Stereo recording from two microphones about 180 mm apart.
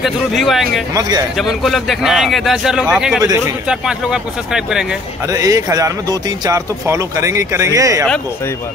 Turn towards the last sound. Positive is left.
turn(degrees=-15)  # may be behind; listen again after turning